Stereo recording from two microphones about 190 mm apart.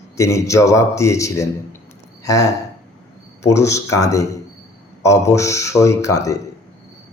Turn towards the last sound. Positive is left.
turn(degrees=15)  # may be behind; listen again after turning